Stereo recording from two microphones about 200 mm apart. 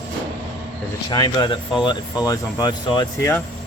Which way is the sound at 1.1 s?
20° left (ahead or behind).